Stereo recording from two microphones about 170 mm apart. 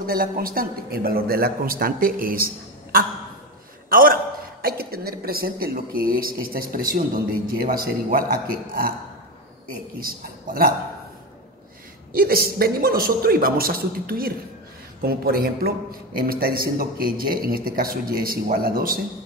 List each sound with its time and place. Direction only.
0.0 s speech: 60° right (ahead or behind)
9.9 s speech: 60° right (ahead or behind)
12.1 s speech: 60° right (ahead or behind)